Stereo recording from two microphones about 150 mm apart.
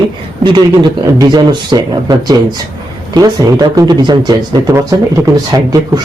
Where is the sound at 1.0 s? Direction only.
25° right (ahead or behind).